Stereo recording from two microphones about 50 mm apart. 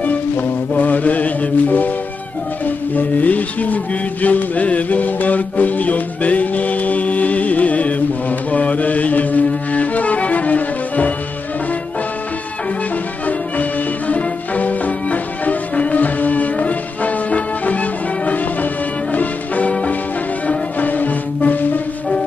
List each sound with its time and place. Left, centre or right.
0.0 s music: left
13.6 s music: left